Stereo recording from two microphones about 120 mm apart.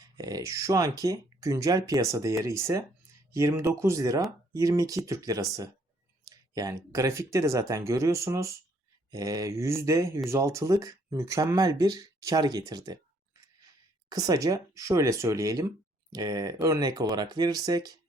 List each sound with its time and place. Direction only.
0.2 s speech: 30° right (ahead or behind)
14.1 s speech: 30° right (ahead or behind)